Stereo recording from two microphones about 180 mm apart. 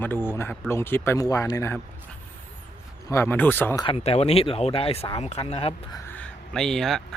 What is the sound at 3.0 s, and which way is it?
Speech, 15° left (ahead or behind).